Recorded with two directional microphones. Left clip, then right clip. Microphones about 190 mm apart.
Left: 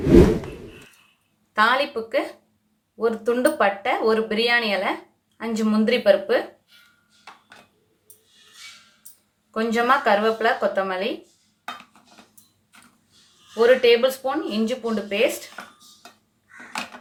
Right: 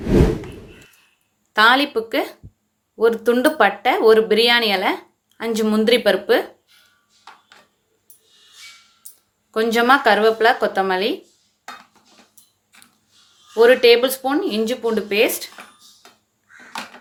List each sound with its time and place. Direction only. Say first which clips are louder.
0.0 s a sound: left 3 dB; centre (ahead or behind)
1.5 s speech: right 5 dB; 45° right (ahead or behind)
9.5 s speech: right 5 dB; 45° right (ahead or behind)
13.6 s speech: right 4 dB; 50° right (ahead or behind)